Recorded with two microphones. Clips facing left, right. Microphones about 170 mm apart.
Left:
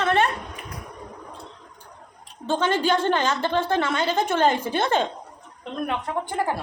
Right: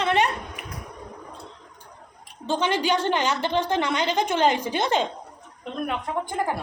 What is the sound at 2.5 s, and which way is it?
A woman's voice, 10° right (ahead or behind).